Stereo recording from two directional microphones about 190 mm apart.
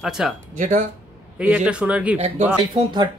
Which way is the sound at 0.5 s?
40° right (ahead or behind).